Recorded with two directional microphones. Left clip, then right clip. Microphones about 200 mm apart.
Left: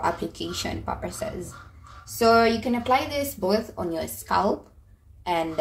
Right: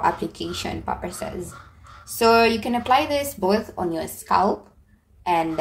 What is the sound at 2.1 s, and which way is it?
Speech, 20° right (ahead or behind).